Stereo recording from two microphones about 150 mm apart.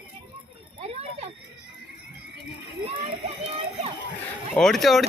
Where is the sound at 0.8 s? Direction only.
45° right (ahead or behind).